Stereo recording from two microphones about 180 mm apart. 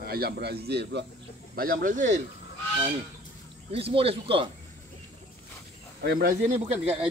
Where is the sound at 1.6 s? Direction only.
50° right (ahead or behind).